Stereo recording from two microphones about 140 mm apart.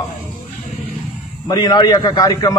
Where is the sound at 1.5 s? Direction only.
30° left (ahead or behind).